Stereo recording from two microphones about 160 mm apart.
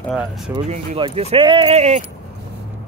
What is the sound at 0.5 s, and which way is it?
Speech, 40° right (ahead or behind).